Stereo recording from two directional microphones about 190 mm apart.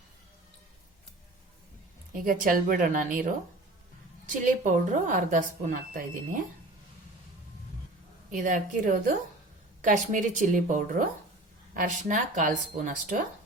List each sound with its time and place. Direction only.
2.2 s speech: 50° right (ahead or behind)
4.3 s speech: 40° right (ahead or behind)
8.3 s speech: 45° right (ahead or behind)